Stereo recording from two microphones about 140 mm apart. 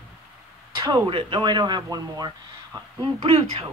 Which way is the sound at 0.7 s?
30° right (ahead or behind).